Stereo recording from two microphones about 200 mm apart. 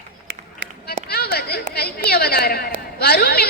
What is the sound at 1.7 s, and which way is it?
A woman's voice, 50° left (ahead or behind).